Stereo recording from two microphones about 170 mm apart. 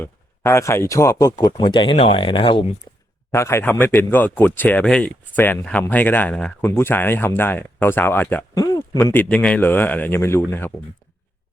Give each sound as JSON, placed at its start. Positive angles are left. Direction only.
{"t": 0.0, "sound": "speech", "side_deg": 15}
{"t": 3.3, "sound": "speech", "side_deg": 15}